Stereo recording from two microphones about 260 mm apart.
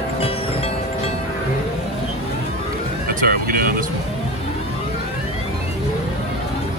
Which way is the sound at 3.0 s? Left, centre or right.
Right.